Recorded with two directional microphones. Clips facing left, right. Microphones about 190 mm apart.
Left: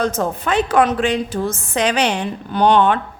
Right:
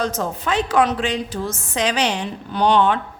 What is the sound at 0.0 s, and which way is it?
A woman's voice, 55° left (ahead or behind).